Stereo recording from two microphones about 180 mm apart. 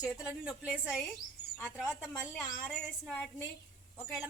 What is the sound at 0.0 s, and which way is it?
A woman's voice, 5° right (ahead or behind).